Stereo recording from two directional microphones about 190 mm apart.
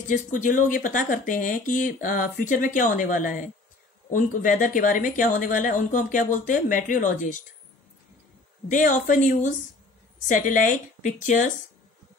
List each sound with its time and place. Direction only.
0.1 s speech: 45° left (ahead or behind)
8.6 s speech: 45° left (ahead or behind)